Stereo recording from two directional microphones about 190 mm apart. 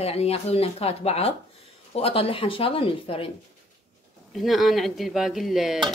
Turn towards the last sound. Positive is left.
turn(degrees=0)  # may be behind; listen again after turning